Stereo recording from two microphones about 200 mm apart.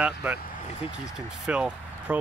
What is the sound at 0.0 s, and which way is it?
Speech, 5° right (ahead or behind).